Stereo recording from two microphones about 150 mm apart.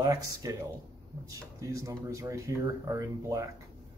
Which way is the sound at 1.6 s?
20° right (ahead or behind).